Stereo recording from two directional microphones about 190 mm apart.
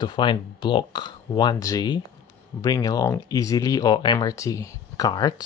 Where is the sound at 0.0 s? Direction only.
25° left (ahead or behind).